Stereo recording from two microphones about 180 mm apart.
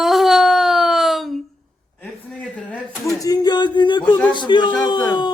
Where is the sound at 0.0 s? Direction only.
Centre (ahead or behind).